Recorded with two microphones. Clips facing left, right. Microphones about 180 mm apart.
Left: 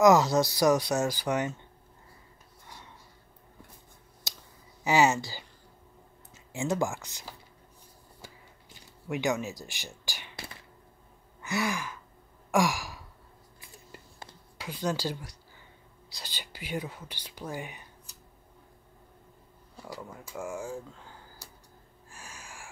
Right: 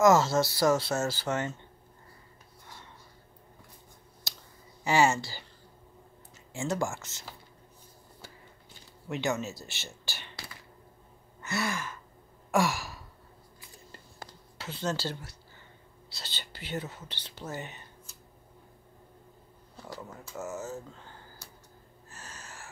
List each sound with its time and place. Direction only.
0.0 s speech: 15° left (ahead or behind)
4.2 s clicking: 20° left (ahead or behind)
4.8 s speech: 15° left (ahead or behind)
9.1 s speech: 15° left (ahead or behind)
11.4 s speech: 15° left (ahead or behind)
12.4 s sigh: 15° left (ahead or behind)
14.6 s speech: 10° left (ahead or behind)
19.8 s speech: 10° left (ahead or behind)
22.1 s a sound: 10° left (ahead or behind)